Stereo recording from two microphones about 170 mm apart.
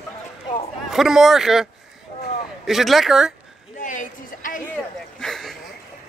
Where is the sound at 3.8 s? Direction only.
50° left (ahead or behind).